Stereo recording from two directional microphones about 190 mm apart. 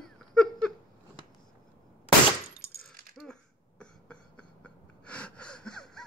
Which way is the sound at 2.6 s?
55° right (ahead or behind).